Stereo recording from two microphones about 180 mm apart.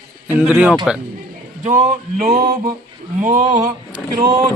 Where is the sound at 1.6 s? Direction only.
50° right (ahead or behind).